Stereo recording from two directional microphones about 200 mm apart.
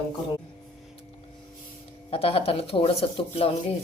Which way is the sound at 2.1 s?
30° left (ahead or behind).